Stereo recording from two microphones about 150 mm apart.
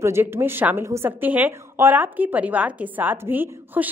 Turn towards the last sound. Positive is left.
turn(degrees=-10)  # may be behind; listen again after turning